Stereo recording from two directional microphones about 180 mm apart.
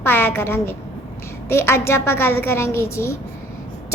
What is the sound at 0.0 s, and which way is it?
A woman's voice, 10° left (ahead or behind).